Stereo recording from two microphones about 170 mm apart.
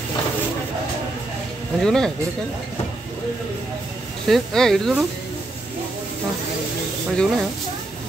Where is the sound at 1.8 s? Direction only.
5° left (ahead or behind).